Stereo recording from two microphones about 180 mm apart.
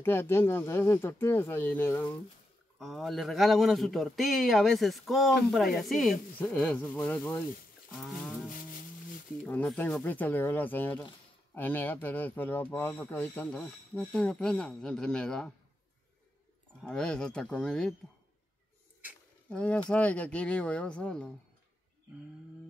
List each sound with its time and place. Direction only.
0.0 s speech: 15° left (ahead or behind)
2.8 s a man's voice: centre (ahead or behind)
7.9 s a sound: centre (ahead or behind)
8.5 s music: 50° left (ahead or behind)
9.5 s speech: 10° left (ahead or behind)
16.8 s a man's voice: 5° left (ahead or behind)
19.5 s speech: 5° left (ahead or behind)